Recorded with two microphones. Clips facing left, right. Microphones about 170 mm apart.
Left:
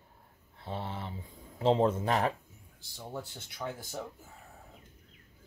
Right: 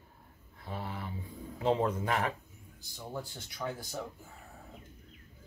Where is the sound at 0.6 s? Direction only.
25° left (ahead or behind).